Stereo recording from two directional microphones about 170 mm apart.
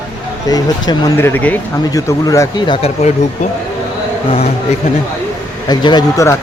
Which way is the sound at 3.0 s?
45° left (ahead or behind).